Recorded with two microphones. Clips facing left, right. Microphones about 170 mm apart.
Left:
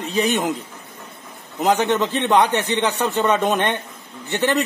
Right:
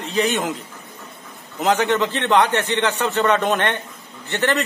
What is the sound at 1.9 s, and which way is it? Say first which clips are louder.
A man's voice: even; 15° left (ahead or behind).